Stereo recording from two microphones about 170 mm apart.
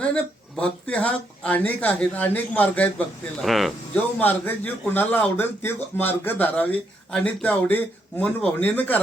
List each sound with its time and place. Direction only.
0.0 s a man's voice: 5° left (ahead or behind)
3.9 s a man's voice: 10° left (ahead or behind)